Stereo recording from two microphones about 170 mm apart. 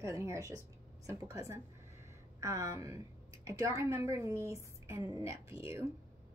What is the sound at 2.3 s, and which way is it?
A woman's voice, 20° right (ahead or behind).